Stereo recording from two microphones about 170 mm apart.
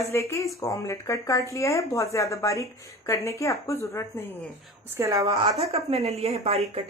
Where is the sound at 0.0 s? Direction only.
15° left (ahead or behind).